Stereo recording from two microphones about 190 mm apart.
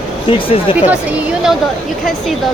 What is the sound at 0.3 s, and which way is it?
Speech, 30° left (ahead or behind).